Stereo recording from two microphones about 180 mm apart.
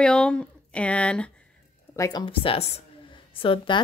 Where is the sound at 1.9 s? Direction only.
20° left (ahead or behind).